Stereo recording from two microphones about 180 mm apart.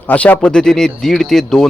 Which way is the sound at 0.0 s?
10° left (ahead or behind).